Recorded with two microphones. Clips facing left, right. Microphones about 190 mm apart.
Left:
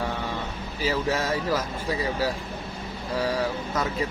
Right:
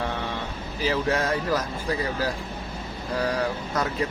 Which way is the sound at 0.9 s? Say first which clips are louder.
Right 1 dB; 5° left (ahead or behind).